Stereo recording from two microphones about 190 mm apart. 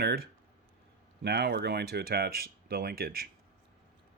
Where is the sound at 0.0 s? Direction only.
60° right (ahead or behind).